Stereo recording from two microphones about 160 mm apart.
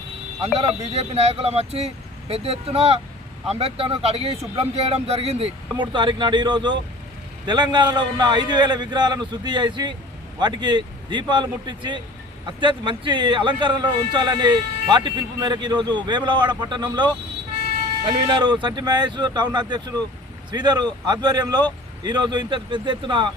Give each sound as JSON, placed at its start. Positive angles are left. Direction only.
{"t": 0.4, "sound": "speech", "side_deg": -40}
{"t": 5.7, "sound": "a man's voice", "side_deg": -30}